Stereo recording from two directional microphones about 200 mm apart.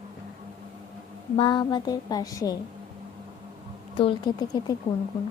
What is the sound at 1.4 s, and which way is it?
Speech, 25° left (ahead or behind).